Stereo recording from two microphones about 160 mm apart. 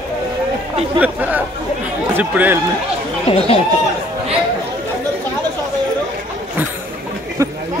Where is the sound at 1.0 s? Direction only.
10° right (ahead or behind).